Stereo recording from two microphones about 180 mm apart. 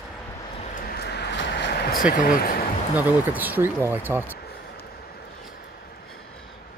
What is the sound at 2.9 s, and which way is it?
Speech, 10° right (ahead or behind).